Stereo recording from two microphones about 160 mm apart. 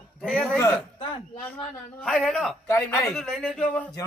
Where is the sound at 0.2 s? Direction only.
5° left (ahead or behind).